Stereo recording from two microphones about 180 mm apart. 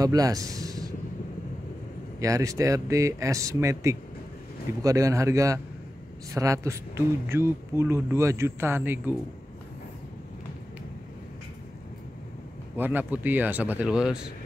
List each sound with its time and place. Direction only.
0.0 s a man's voice: 20° right (ahead or behind)
2.1 s speech: 20° right (ahead or behind)
12.7 s speech: 10° right (ahead or behind)